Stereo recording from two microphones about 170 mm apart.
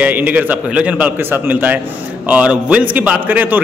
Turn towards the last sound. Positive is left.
turn(degrees=-10)  # may be behind; listen again after turning